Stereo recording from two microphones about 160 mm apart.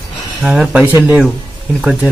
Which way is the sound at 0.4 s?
5° right (ahead or behind).